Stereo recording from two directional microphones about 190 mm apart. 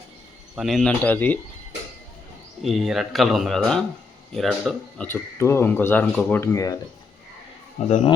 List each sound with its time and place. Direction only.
0.5 s speech: centre (ahead or behind)
2.6 s speech: centre (ahead or behind); by 6.7 s 15° left (ahead or behind)
7.9 s speech: 35° left (ahead or behind)